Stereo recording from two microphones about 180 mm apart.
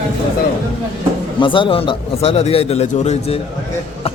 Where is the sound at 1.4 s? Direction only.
25° left (ahead or behind).